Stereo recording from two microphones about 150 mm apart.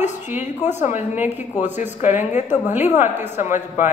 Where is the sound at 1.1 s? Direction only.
15° right (ahead or behind).